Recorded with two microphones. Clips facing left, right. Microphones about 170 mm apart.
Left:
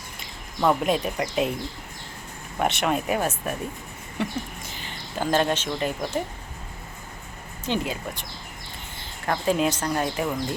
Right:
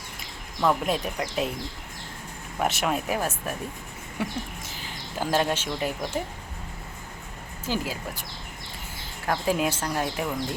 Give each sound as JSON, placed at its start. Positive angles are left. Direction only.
{"t": 0.6, "sound": "speech", "side_deg": 5}
{"t": 2.6, "sound": "speech", "side_deg": 0}
{"t": 4.8, "sound": "speech", "side_deg": -5}
{"t": 7.6, "sound": "speech", "side_deg": -5}
{"t": 9.2, "sound": "speech", "side_deg": -5}